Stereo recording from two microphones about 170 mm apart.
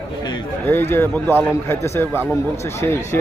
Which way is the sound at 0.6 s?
15° left (ahead or behind).